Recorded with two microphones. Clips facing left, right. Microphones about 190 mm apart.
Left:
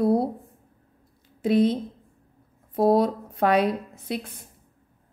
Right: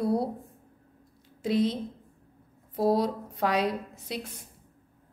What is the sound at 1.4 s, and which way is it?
Speech, 55° left (ahead or behind).